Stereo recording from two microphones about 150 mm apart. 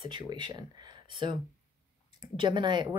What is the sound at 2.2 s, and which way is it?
Speech, 30° right (ahead or behind).